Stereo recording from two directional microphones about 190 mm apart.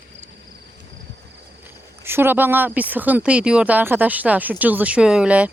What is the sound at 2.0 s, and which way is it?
Speech, 10° right (ahead or behind).